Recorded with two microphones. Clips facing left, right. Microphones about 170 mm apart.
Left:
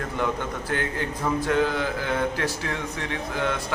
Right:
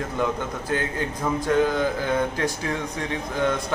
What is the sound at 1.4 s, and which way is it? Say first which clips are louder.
Speech: right 3 dB; 15° right (ahead or behind).